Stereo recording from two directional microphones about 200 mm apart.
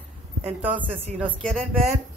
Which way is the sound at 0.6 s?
10° right (ahead or behind).